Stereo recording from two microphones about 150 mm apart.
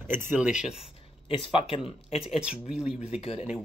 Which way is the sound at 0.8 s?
35° left (ahead or behind).